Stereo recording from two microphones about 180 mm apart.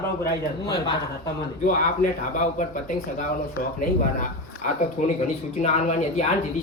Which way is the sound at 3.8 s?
45° left (ahead or behind).